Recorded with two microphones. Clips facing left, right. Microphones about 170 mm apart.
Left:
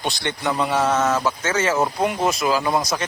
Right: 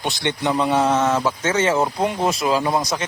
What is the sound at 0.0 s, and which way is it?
Speech, 20° right (ahead or behind).